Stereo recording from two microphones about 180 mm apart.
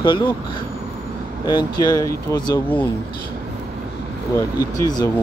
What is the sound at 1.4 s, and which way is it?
Speech, 20° left (ahead or behind).